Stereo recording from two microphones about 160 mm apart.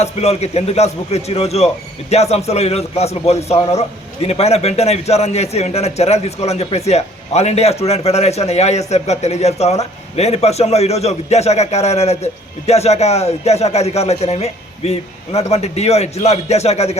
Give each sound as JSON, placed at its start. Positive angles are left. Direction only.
{"t": 0.0, "sound": "a man's voice", "side_deg": 40}